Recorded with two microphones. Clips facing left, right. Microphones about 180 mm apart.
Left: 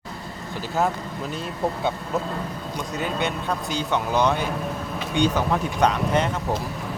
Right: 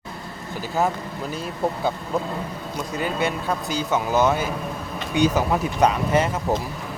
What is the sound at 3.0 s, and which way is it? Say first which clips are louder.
Speech: right 2 dB; 5° right (ahead or behind).